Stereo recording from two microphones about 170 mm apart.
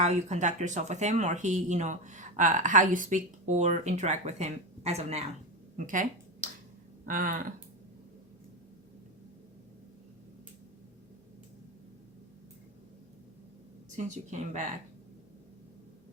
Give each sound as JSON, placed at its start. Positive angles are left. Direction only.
{"t": 0.0, "sound": "speech", "side_deg": -40}
{"t": 5.7, "sound": "a sound", "side_deg": -50}
{"t": 13.9, "sound": "speech", "side_deg": -45}